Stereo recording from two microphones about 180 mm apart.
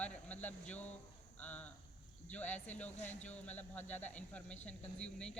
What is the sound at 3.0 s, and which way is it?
Speech, 40° left (ahead or behind).